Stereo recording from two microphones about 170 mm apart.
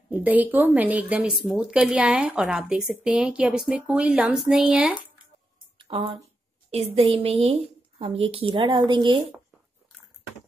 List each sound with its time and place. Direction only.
0.1 s a woman's voice: 10° right (ahead or behind)
5.8 s a sound: 35° right (ahead or behind)
6.7 s a woman's voice: 35° right (ahead or behind)